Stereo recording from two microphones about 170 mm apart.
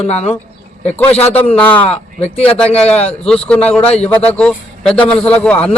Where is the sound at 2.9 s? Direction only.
35° left (ahead or behind).